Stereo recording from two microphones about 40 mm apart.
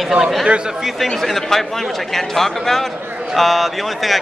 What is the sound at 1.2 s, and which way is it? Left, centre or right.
Speech, centre.